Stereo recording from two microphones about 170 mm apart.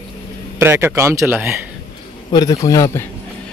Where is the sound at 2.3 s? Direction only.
25° left (ahead or behind).